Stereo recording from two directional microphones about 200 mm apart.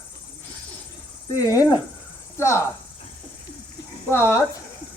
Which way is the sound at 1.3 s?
15° left (ahead or behind).